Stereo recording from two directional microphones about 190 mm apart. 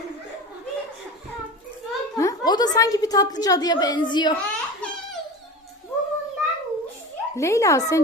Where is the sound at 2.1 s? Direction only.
20° left (ahead or behind).